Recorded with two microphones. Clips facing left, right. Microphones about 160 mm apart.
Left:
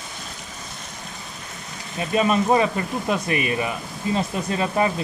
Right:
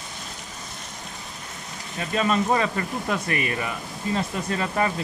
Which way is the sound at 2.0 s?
15° left (ahead or behind).